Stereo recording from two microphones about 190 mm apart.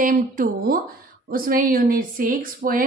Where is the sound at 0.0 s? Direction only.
45° right (ahead or behind).